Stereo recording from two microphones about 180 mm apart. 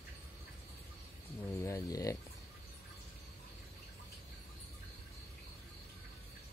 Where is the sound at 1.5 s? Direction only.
15° left (ahead or behind).